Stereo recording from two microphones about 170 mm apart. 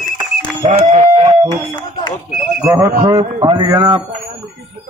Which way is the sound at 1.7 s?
25° left (ahead or behind).